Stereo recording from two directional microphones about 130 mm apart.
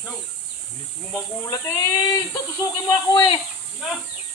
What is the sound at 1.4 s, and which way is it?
Speech, 25° left (ahead or behind).